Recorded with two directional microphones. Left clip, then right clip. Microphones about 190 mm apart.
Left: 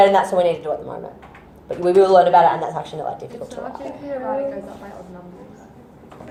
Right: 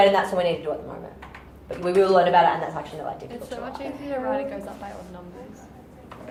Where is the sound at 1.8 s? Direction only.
20° left (ahead or behind).